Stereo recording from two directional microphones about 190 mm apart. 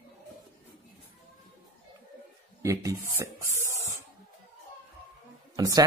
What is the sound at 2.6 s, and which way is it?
Speech, 15° right (ahead or behind).